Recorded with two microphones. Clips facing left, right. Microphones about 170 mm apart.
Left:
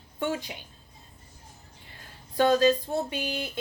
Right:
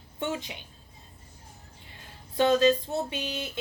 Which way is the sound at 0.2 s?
20° right (ahead or behind).